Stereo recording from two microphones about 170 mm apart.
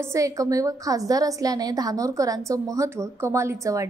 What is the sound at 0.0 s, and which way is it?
A woman's voice, 20° right (ahead or behind).